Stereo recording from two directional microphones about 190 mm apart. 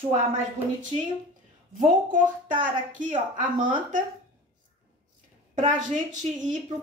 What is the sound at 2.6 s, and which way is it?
A woman's voice, 45° right (ahead or behind).